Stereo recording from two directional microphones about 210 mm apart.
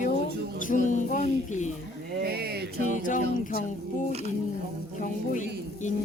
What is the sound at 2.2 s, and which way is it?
Speech, 50° right (ahead or behind).